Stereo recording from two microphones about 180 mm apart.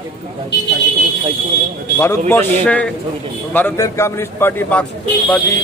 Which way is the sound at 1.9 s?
15° left (ahead or behind).